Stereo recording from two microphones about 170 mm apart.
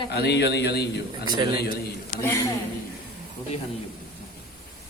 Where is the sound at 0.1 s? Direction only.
80° left.